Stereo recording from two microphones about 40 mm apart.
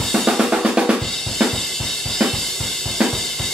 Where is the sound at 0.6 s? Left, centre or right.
Centre.